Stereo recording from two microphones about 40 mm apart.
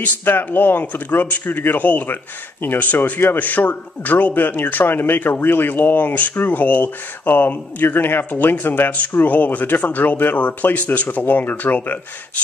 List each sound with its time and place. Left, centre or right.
0.2 s speech: left
1.8 s speech: left
6.0 s speech: left
6.3 s speech: left
8.3 s speech: left